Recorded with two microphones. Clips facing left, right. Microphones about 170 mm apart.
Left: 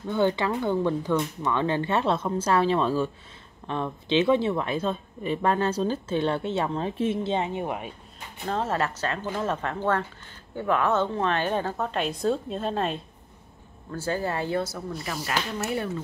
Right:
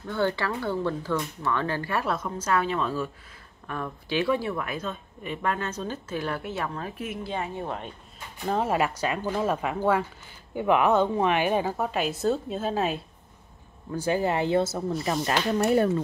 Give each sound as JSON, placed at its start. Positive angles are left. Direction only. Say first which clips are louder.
{"t": 0.0, "sound": "speech", "louder": "left 3 dB", "side_deg": 20}
{"t": 8.5, "sound": "speech", "louder": "right 2 dB", "side_deg": -10}
{"t": 13.9, "sound": "speech", "louder": "right 3 dB", "side_deg": -15}